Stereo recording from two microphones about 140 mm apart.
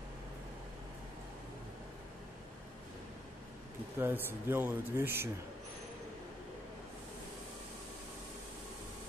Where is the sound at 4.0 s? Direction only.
15° right (ahead or behind).